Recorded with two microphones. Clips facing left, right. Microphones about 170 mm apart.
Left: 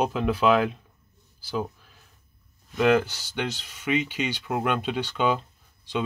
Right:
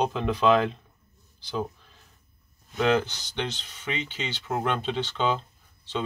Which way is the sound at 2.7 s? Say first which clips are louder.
Left 3 dB; 5° left (ahead or behind).